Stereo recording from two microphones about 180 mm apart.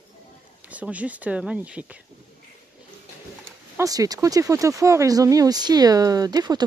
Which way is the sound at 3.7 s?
20° right (ahead or behind).